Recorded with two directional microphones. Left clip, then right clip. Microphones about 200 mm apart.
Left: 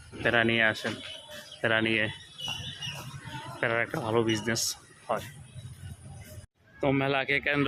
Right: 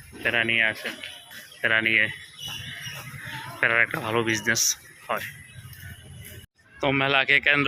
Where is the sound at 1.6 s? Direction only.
20° left (ahead or behind).